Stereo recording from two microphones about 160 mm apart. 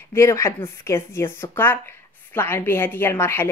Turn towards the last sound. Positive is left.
turn(degrees=15)  # may be behind; listen again after turning